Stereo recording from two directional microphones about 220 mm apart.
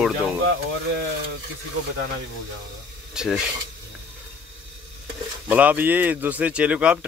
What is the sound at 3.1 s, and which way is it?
Speech, 5° right (ahead or behind).